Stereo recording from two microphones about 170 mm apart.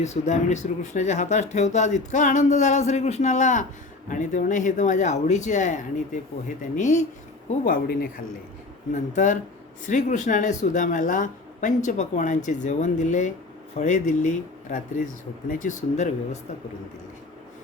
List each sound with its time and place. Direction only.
0.0 s speech: 40° left (ahead or behind)
9.1 s speech: 45° left (ahead or behind)